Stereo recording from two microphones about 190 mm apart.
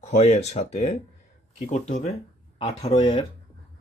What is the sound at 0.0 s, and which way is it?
Speech, 35° left (ahead or behind).